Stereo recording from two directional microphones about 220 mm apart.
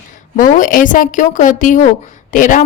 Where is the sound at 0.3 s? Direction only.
35° left (ahead or behind).